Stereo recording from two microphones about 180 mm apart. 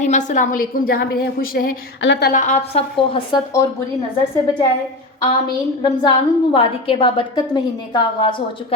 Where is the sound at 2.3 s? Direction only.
45° left (ahead or behind); by 3.4 s 30° left (ahead or behind).